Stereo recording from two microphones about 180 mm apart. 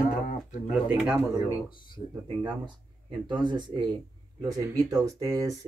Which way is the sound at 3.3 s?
25° right (ahead or behind).